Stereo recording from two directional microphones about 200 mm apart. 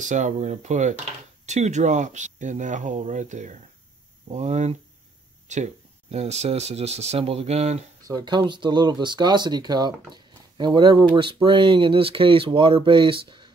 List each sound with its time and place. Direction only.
0.0 s speech: 35° right (ahead or behind)
8.1 s speech: 20° right (ahead or behind)